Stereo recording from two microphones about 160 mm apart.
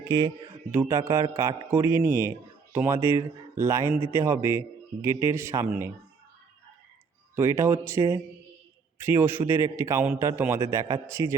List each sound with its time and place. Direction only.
0.1 s speech: 25° right (ahead or behind)
7.3 s a man's voice: 15° right (ahead or behind)